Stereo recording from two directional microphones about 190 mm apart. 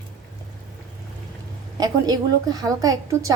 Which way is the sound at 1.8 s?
20° right (ahead or behind).